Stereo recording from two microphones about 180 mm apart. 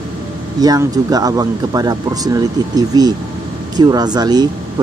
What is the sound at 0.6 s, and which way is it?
Speech, 20° right (ahead or behind).